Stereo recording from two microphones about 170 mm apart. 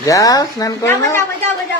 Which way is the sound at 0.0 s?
20° left (ahead or behind).